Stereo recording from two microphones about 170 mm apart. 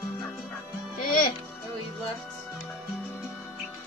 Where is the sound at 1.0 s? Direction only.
60° left (ahead or behind).